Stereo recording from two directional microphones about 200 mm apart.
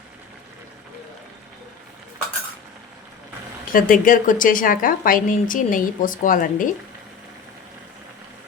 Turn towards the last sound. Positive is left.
turn(degrees=40)  # may be behind; listen again after turning